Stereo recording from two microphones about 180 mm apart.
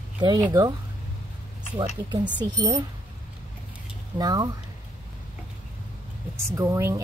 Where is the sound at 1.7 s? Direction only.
25° right (ahead or behind).